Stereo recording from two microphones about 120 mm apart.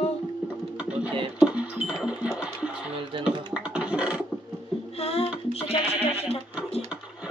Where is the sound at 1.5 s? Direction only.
10° right (ahead or behind).